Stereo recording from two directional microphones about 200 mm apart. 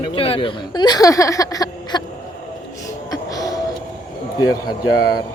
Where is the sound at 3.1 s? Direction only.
20° left (ahead or behind).